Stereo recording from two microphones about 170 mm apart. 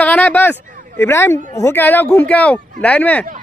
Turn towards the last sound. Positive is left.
turn(degrees=10)  # may be behind; listen again after turning